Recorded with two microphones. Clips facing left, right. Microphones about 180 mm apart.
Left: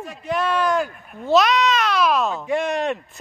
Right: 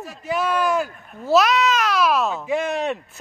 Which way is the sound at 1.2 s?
5° right (ahead or behind).